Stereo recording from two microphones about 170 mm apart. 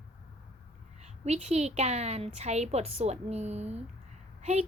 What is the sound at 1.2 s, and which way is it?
A woman's voice, 40° right (ahead or behind).